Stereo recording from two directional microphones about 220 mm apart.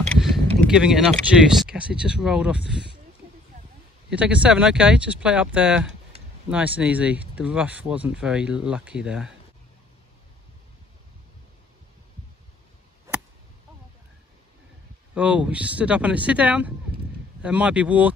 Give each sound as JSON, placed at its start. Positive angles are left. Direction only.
{"t": 0.0, "sound": "a sound", "side_deg": 0}
{"t": 0.7, "sound": "speech", "side_deg": -5}
{"t": 4.1, "sound": "speech", "side_deg": -5}
{"t": 15.1, "sound": "speech", "side_deg": -5}